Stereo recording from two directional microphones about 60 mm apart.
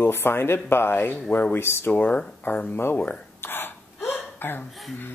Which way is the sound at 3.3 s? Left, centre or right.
Left.